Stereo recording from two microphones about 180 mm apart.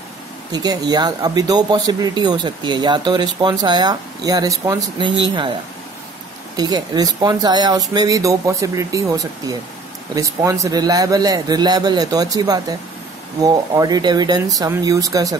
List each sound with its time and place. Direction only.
0.5 s speech: 20° right (ahead or behind)